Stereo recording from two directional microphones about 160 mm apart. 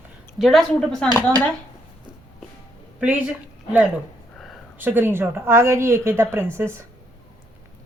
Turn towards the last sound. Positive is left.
turn(degrees=-15)  # may be behind; listen again after turning